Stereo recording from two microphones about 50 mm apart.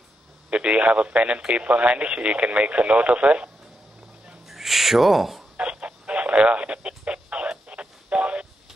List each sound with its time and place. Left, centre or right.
0.5 s speech: right
4.5 s owl: centre
5.6 s radio: right